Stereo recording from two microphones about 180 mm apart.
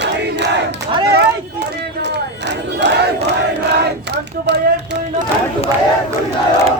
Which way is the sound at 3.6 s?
65° right (ahead or behind).